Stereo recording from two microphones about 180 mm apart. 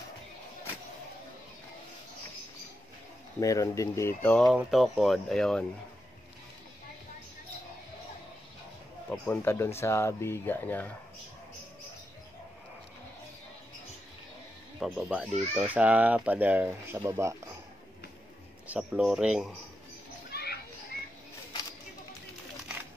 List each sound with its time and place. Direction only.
3.3 s speech: 20° left (ahead or behind)
4.5 s speech: centre (ahead or behind)
9.1 s speech: 10° left (ahead or behind)
14.8 s speech: 5° right (ahead or behind)
18.7 s speech: 5° right (ahead or behind)
20.2 s children playing: 60° left (ahead or behind)